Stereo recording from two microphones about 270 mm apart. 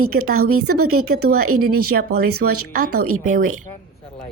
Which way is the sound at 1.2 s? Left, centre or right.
Right.